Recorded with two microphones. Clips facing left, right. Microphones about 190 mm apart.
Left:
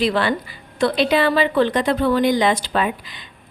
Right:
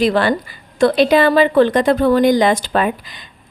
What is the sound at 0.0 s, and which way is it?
Speech, 45° right (ahead or behind).